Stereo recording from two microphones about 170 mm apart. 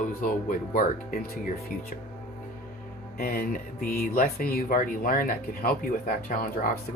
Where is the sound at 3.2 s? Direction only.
55° left (ahead or behind).